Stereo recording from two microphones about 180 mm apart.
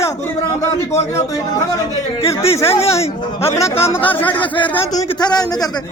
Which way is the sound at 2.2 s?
35° left (ahead or behind).